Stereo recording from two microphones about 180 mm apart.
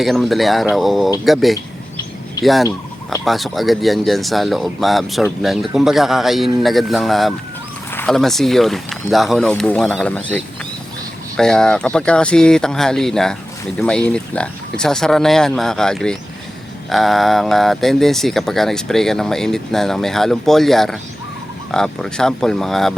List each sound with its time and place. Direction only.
0.0 s speech: centre (ahead or behind)